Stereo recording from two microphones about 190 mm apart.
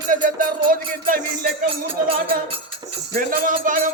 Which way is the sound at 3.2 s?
45° right (ahead or behind).